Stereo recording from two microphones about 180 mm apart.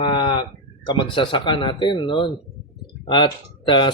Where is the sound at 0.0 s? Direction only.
25° left (ahead or behind).